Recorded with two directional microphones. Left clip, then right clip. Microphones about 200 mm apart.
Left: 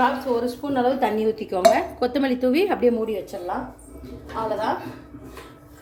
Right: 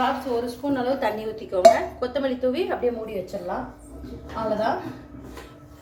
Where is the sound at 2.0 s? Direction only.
45° left (ahead or behind).